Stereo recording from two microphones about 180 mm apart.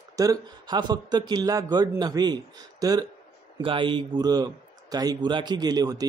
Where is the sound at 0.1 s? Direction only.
20° right (ahead or behind).